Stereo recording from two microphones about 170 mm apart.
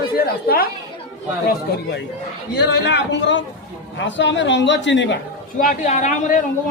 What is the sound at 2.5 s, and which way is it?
A man's voice, 80° left.